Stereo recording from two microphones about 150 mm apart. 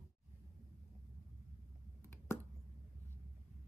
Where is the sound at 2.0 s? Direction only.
15° left (ahead or behind).